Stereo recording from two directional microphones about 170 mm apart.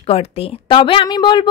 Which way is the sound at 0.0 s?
35° left (ahead or behind).